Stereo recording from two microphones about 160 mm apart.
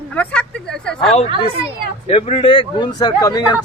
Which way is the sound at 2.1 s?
35° left (ahead or behind).